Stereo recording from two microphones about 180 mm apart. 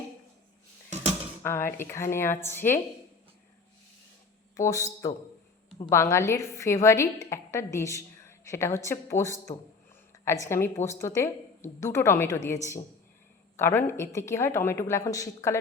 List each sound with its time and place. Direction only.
1.4 s a woman's voice: 15° left (ahead or behind)
4.5 s a woman's voice: 15° left (ahead or behind)